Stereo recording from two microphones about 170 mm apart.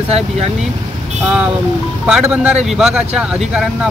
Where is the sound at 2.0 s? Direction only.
5° right (ahead or behind).